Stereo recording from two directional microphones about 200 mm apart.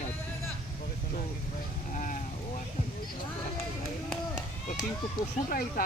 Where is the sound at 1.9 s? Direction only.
40° left (ahead or behind).